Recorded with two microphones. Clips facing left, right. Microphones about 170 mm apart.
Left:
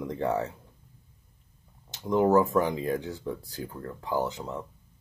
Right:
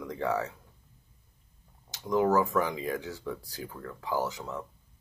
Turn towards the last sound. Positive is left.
turn(degrees=20)  # may be behind; listen again after turning